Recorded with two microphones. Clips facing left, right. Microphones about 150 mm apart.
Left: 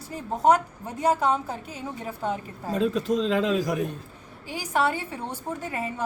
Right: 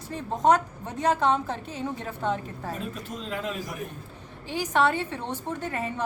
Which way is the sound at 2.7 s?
90° left.